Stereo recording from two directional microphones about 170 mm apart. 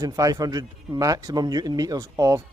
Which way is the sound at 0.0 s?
20° right (ahead or behind).